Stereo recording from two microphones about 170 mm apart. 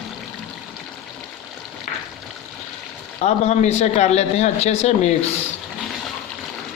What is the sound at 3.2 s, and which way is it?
Speech, 40° left (ahead or behind).